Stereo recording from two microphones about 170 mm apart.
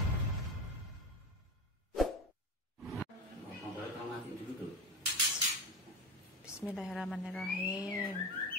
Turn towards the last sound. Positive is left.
turn(degrees=0)  # may be behind; listen again after turning